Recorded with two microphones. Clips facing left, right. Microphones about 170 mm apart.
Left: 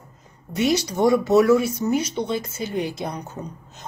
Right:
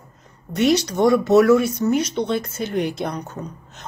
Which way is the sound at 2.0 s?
70° right (ahead or behind).